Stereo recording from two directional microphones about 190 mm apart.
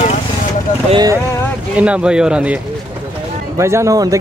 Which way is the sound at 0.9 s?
20° right (ahead or behind).